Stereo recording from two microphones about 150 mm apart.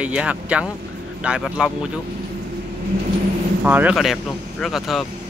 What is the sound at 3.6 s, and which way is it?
Speech, 10° right (ahead or behind).